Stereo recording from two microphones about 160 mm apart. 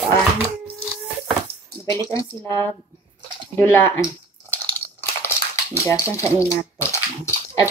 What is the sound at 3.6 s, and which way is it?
Speech, 15° left (ahead or behind).